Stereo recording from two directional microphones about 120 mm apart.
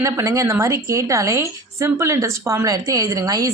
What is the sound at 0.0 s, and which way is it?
A woman's voice, 25° right (ahead or behind).